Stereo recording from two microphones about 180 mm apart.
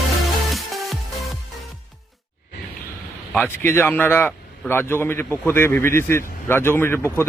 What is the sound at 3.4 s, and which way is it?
A man's voice, 10° left (ahead or behind).